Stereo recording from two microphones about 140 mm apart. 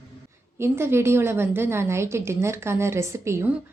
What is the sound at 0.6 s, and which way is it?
A woman's voice, 15° right (ahead or behind).